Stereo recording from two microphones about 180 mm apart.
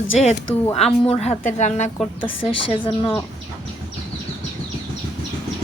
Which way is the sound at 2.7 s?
30° left (ahead or behind).